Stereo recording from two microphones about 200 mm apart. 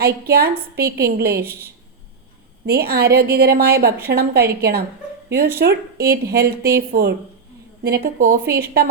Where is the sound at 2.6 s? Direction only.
50° right (ahead or behind).